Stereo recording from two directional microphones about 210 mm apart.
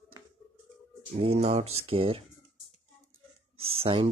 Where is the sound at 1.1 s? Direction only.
30° right (ahead or behind).